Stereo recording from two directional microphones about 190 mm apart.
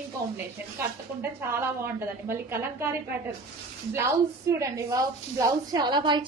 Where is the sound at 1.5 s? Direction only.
15° right (ahead or behind).